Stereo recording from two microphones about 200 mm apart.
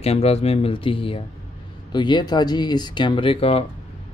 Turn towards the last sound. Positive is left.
turn(degrees=30)  # may be behind; listen again after turning